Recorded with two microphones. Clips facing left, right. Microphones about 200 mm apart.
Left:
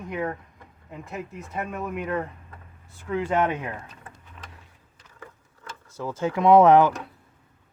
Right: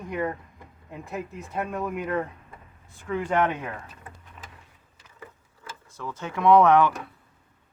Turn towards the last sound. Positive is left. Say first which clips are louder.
# left 2 dB
turn(degrees=25)  # may be behind; listen again after turning